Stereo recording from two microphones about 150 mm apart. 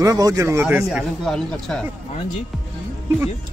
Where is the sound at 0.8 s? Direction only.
Centre (ahead or behind).